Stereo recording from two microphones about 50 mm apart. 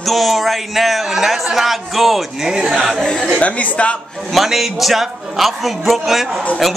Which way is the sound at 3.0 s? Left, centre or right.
Centre.